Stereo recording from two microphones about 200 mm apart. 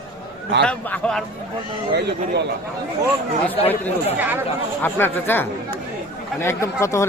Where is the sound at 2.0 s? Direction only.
55° right (ahead or behind).